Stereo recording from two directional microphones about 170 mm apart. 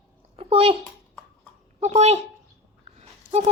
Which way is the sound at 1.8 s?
40° right (ahead or behind).